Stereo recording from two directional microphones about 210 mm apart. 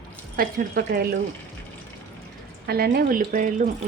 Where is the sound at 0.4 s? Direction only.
45° right (ahead or behind).